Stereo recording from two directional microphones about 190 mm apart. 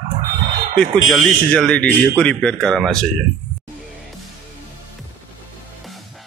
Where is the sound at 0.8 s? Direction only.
Centre (ahead or behind).